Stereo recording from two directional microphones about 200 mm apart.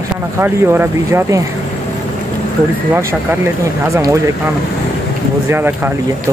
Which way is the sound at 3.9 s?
15° right (ahead or behind).